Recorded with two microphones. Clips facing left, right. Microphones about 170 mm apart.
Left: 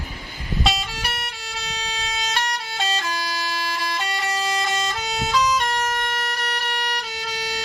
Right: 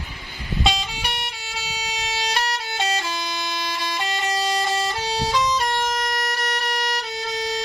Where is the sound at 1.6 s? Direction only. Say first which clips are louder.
Even; 10° right (ahead or behind).